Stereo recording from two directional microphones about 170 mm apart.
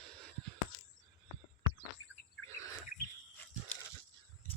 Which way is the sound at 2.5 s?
20° left (ahead or behind).